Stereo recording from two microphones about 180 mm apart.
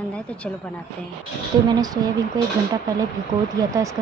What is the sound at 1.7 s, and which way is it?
Speech, 20° right (ahead or behind).